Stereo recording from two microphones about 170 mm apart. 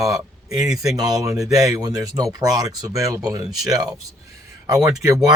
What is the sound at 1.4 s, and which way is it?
Speech, 20° right (ahead or behind).